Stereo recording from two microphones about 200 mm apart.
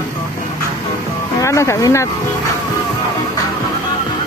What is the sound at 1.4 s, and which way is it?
Speech, 15° left (ahead or behind).